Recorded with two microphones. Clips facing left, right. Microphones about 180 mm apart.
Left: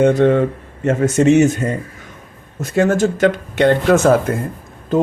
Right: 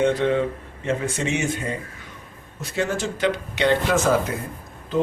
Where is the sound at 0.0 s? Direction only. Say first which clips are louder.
Left 7 dB; 45° left (ahead or behind).